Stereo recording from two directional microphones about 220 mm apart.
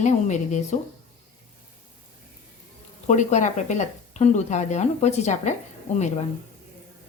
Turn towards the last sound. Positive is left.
turn(degrees=30)  # may be behind; listen again after turning